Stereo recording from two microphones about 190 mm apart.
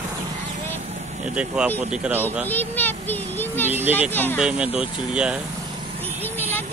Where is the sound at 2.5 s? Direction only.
10° left (ahead or behind).